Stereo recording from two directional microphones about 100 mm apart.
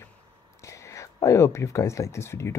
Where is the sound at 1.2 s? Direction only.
30° left (ahead or behind).